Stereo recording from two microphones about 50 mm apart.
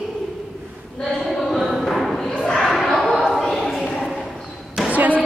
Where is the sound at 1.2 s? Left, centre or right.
Centre.